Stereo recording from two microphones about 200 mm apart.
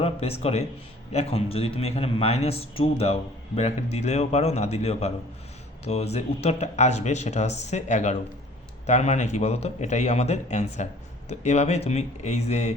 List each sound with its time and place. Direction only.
0.0 s a man's voice: 30° left (ahead or behind)